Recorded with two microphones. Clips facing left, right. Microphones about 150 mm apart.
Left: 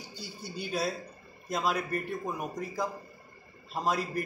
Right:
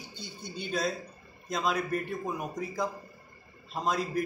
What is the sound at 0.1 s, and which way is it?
Speech, 5° left (ahead or behind).